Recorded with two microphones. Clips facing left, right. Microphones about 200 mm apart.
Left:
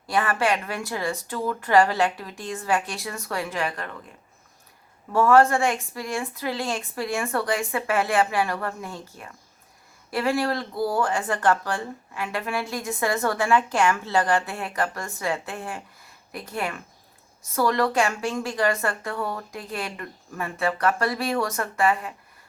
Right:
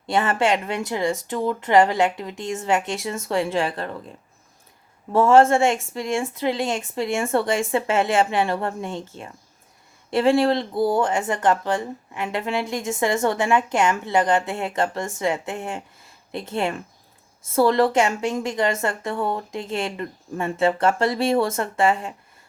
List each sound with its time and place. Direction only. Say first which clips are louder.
0.1 s speech: right 3 dB; 25° right (ahead or behind)
5.1 s speech: right 3 dB; 25° right (ahead or behind)